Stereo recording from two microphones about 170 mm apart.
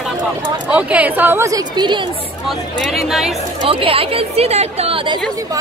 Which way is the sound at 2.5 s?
Centre (ahead or behind).